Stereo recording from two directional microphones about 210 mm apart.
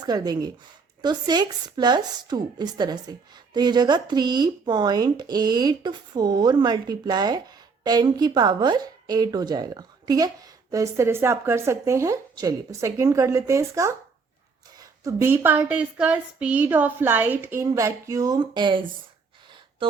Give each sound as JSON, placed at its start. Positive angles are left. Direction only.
{"t": 0.0, "sound": "speech", "side_deg": -20}